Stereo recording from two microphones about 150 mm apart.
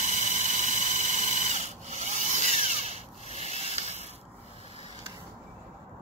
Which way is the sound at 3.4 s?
45° left (ahead or behind).